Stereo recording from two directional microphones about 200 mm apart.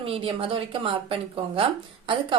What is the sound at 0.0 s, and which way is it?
A woman's voice, 30° right (ahead or behind).